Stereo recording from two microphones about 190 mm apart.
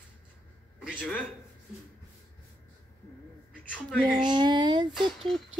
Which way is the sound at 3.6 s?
5° left (ahead or behind).